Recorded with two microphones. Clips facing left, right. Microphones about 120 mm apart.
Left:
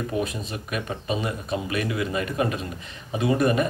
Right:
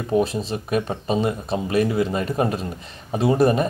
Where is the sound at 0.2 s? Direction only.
30° right (ahead or behind).